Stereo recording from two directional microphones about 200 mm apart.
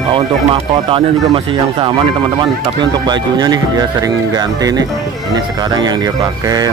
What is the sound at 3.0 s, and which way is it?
Speech, 20° right (ahead or behind).